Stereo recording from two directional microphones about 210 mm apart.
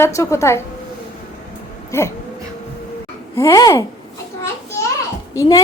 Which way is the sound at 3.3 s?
15° left (ahead or behind).